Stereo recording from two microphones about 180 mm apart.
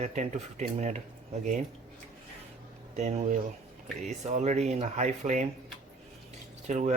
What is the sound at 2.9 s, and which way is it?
Speech, 40° right (ahead or behind).